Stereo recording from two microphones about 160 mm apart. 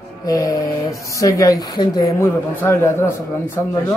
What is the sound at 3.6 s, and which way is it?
Speech, 20° left (ahead or behind).